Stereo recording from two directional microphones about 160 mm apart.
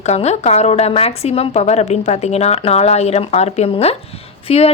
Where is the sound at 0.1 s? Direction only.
40° left (ahead or behind).